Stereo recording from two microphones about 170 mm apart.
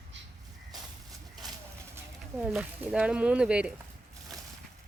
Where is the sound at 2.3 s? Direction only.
5° right (ahead or behind).